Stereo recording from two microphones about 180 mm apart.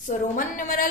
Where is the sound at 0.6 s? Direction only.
50° left (ahead or behind).